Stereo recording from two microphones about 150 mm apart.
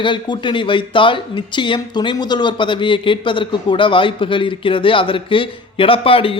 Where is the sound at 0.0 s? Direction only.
30° left (ahead or behind).